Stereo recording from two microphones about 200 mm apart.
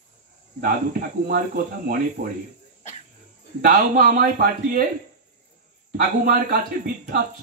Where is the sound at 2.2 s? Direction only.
50° right (ahead or behind).